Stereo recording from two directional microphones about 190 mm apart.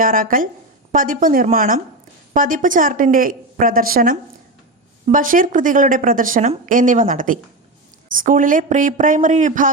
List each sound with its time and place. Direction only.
0.0 s speech: 45° right (ahead or behind)